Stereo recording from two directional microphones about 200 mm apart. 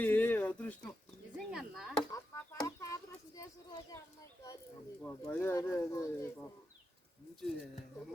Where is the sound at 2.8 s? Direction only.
15° left (ahead or behind).